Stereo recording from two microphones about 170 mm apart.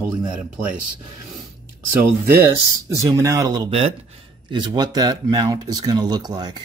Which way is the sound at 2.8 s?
15° right (ahead or behind).